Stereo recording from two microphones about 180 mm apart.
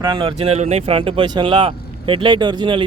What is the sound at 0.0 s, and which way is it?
Speech, 25° right (ahead or behind).